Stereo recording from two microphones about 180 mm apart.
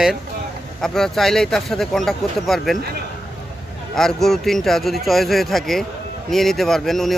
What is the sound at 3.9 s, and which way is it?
Speech, centre (ahead or behind).